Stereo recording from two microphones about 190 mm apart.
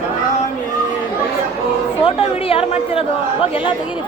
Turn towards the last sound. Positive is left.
turn(degrees=30)  # may be behind; listen again after turning